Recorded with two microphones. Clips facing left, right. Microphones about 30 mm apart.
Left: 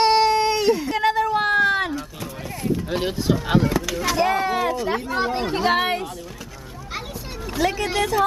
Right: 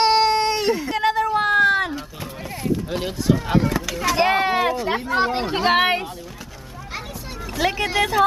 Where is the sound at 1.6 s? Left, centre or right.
Centre.